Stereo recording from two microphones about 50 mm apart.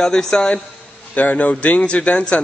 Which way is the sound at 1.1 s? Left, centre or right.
Left.